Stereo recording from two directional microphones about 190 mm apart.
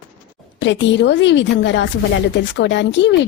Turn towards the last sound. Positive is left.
turn(degrees=70)  # may be behind; listen again after turning